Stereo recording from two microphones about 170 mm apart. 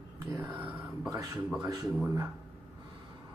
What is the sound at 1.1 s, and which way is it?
Speech, 20° right (ahead or behind).